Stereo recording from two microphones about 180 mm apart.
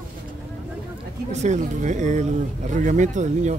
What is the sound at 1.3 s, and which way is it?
Speech, 40° right (ahead or behind).